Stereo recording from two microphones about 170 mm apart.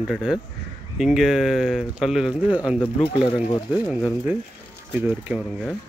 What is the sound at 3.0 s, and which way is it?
Speech, 35° left (ahead or behind).